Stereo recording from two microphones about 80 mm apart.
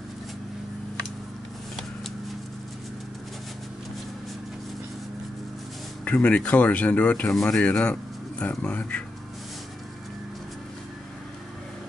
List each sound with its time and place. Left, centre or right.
6.0 s speech: centre